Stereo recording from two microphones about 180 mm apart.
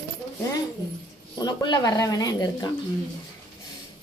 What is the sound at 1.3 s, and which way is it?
Speech, 25° left (ahead or behind).